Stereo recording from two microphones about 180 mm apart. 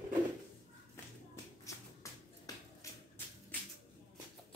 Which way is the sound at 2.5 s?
20° left (ahead or behind).